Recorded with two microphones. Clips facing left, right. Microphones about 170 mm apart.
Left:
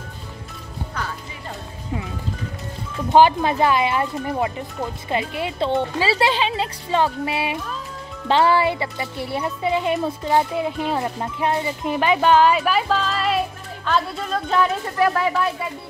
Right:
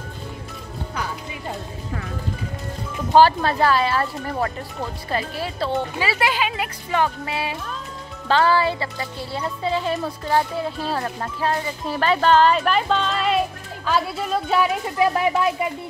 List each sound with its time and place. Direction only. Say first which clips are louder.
3.2 s speech: even; 15° left (ahead or behind); by 15.7 s 15° right (ahead or behind)